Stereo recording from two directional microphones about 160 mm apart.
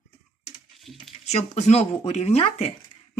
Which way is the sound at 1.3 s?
45° left (ahead or behind).